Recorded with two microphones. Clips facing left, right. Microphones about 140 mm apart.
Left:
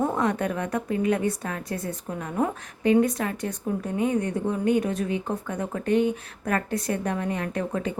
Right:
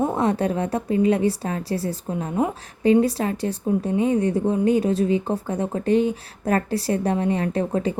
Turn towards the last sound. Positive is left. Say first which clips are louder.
# right 5 dB
turn(degrees=-30)  # may be behind; listen again after turning